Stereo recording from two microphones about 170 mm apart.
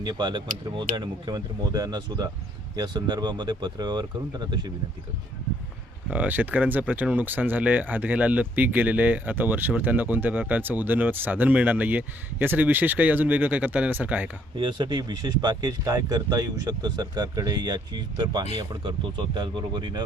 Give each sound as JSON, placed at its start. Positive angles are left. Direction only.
{"t": 0.0, "sound": "speech", "side_deg": -25}
{"t": 6.1, "sound": "speech", "side_deg": -10}
{"t": 14.5, "sound": "speech", "side_deg": -25}